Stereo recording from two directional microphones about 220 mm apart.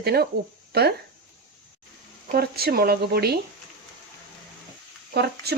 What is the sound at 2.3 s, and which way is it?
Speech, 45° right (ahead or behind).